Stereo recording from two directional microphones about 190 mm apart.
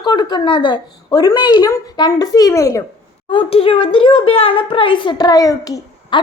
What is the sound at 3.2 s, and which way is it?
A child's voice, 30° left (ahead or behind).